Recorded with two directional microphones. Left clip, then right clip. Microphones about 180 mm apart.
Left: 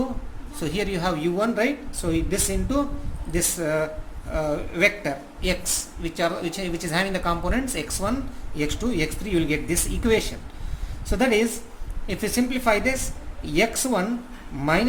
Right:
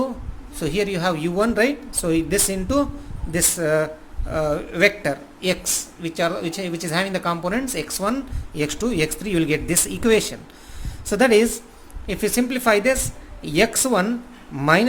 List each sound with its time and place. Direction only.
0.6 s speech: 35° right (ahead or behind)